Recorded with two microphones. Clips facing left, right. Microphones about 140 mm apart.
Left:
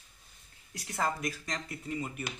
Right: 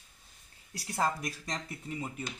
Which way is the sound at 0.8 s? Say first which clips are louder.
Right 1 dB; 30° right (ahead or behind).